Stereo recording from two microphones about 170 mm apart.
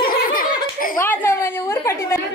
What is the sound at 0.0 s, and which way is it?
Laughter, 60° left (ahead or behind).